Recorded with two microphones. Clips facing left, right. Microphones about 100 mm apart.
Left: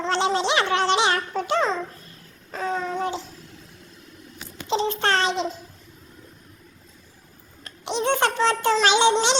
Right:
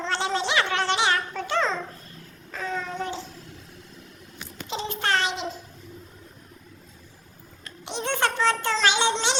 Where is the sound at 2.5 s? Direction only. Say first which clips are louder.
Left 4 dB; 35° left (ahead or behind).